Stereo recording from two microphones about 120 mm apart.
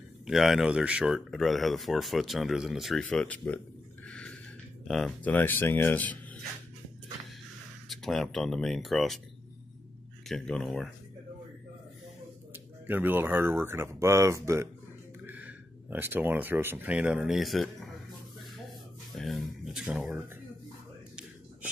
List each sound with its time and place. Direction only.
0.3 s speech: centre (ahead or behind)
4.8 s speech: centre (ahead or behind)
5.2 s speech: 15° left (ahead or behind)
7.9 s speech: centre (ahead or behind)
10.2 s speech: 5° left (ahead or behind)
12.8 s speech: 15° right (ahead or behind); by 17.9 s centre (ahead or behind)
19.1 s a sound: centre (ahead or behind)